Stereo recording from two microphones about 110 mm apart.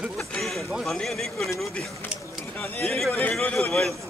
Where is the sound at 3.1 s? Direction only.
15° left (ahead or behind).